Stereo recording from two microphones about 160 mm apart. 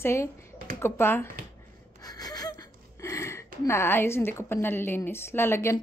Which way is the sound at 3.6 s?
15° left (ahead or behind).